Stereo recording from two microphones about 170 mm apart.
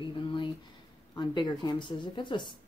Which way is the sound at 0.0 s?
30° left (ahead or behind).